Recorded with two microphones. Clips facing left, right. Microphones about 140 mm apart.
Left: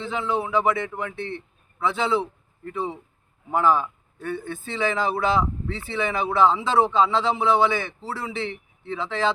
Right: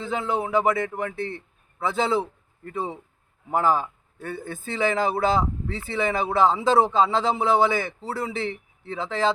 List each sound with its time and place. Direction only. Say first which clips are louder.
0.0 s speech: even; 40° right (ahead or behind)
3.5 s speech: left 1 dB; 40° right (ahead or behind)